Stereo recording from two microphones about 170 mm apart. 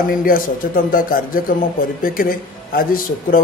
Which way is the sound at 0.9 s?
55° left (ahead or behind).